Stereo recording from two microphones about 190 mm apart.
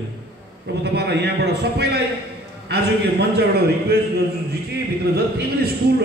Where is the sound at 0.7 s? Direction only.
60° right (ahead or behind).